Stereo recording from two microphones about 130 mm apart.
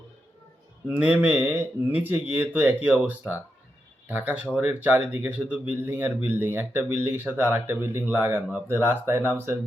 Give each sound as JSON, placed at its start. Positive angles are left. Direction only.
{"t": 0.9, "sound": "speech", "side_deg": -10}